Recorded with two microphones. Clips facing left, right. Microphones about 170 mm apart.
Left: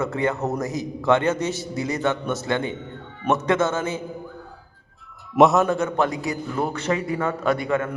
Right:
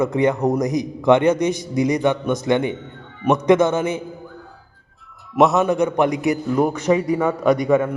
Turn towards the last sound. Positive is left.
turn(degrees=-10)  # may be behind; listen again after turning